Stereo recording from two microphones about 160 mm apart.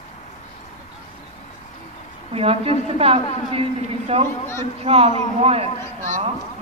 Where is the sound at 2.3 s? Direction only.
40° right (ahead or behind).